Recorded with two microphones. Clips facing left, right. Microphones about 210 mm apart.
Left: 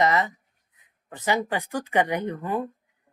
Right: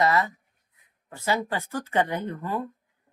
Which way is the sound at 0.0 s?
20° left (ahead or behind).